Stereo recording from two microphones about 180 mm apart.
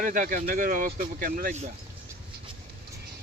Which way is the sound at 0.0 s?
50° right (ahead or behind).